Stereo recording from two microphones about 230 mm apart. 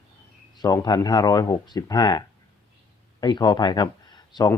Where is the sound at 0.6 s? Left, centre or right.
Centre.